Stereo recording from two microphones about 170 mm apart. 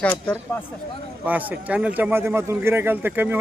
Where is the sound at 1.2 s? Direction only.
10° right (ahead or behind).